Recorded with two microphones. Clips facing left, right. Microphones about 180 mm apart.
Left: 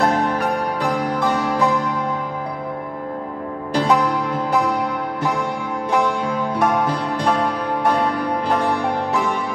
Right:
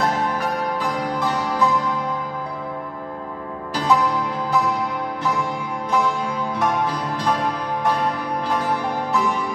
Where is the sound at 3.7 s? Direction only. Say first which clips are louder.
Left 3 dB; 60° left (ahead or behind).